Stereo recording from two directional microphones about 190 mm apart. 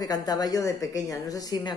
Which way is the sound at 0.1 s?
20° left (ahead or behind).